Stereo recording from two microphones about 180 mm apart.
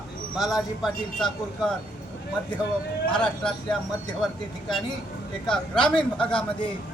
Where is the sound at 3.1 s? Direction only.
5° left (ahead or behind).